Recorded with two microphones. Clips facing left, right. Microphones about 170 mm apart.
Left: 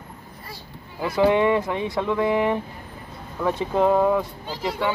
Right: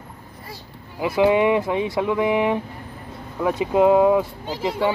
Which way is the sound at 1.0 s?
20° right (ahead or behind).